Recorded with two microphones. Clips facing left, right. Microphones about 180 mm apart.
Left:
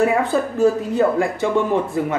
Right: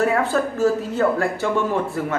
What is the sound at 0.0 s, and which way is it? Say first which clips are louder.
Speech: left 2 dB; 15° left (ahead or behind).